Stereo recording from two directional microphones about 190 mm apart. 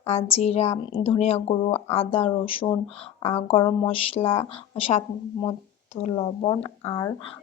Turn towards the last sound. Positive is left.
turn(degrees=30)  # may be behind; listen again after turning